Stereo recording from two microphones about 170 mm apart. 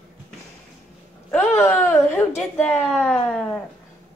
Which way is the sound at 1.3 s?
15° left (ahead or behind).